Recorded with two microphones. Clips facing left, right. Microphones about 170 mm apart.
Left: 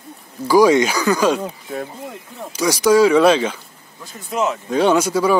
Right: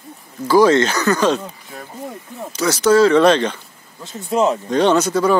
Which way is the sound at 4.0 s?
25° right (ahead or behind).